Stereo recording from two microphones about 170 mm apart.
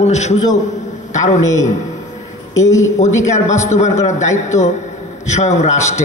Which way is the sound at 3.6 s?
40° left (ahead or behind).